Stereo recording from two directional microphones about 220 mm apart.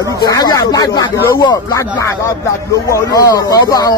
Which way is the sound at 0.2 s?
15° left (ahead or behind).